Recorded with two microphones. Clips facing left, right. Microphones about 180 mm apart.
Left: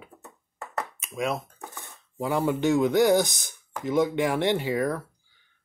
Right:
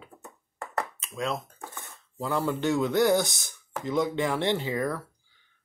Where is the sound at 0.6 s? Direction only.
5° left (ahead or behind).